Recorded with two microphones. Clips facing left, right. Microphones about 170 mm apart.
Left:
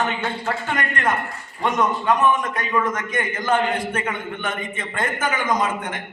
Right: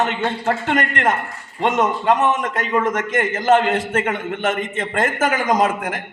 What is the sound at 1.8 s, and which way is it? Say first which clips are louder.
Speech: right 2 dB; 25° right (ahead or behind).